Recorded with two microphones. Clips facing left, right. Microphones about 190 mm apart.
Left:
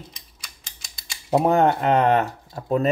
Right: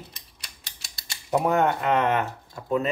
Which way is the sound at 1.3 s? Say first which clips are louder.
Left 4 dB; 30° left (ahead or behind).